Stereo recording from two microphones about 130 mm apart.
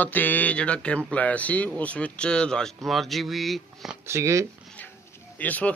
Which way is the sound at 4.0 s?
20° right (ahead or behind).